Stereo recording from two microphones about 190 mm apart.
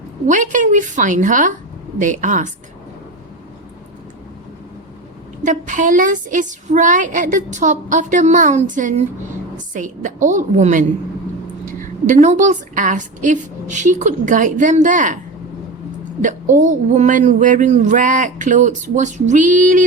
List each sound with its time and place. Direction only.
0.3 s speech: 40° right (ahead or behind)
5.5 s speech: 40° right (ahead or behind)
16.2 s speech: 40° right (ahead or behind)